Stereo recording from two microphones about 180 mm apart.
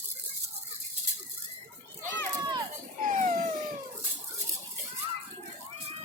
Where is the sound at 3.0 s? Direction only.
45° right (ahead or behind).